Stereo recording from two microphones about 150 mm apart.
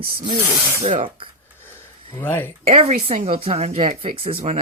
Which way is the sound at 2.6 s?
45° right (ahead or behind).